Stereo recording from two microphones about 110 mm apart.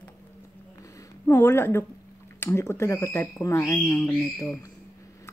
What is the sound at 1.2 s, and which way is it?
A woman's voice, 20° left (ahead or behind).